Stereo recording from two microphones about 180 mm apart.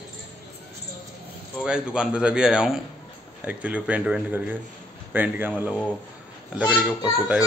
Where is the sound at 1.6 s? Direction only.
5° right (ahead or behind).